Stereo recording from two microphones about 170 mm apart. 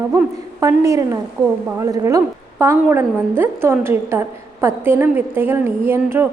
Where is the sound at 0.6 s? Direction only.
20° right (ahead or behind).